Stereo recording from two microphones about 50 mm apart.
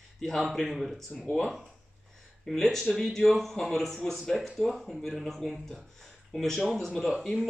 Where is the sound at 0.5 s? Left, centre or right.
Centre.